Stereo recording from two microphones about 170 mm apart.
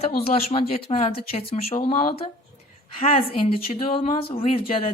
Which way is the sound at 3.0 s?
40° left (ahead or behind).